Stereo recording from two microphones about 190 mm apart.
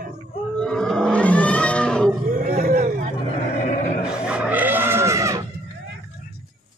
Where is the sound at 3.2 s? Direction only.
35° left (ahead or behind).